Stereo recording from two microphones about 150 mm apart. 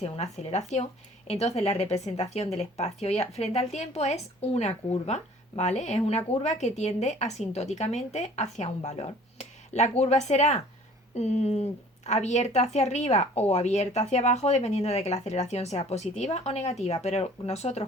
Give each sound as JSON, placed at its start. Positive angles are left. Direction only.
{"t": 0.0, "sound": "speech", "side_deg": 45}